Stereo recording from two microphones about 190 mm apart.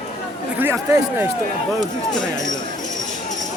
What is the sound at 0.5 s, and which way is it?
Speech, 10° right (ahead or behind).